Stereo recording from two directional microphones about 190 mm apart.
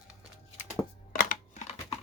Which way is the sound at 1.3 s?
40° left (ahead or behind).